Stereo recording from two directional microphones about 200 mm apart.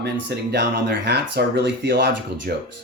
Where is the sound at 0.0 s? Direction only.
60° right (ahead or behind).